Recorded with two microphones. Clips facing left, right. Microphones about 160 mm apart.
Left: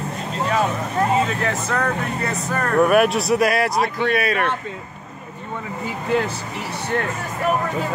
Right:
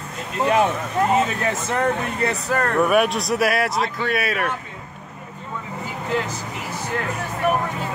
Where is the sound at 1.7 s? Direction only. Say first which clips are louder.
Right 3 dB; 25° right (ahead or behind).